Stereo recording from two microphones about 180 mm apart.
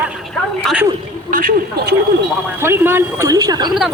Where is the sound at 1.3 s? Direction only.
50° right (ahead or behind).